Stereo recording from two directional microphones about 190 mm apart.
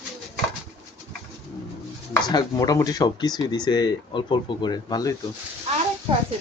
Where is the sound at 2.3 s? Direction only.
20° left (ahead or behind).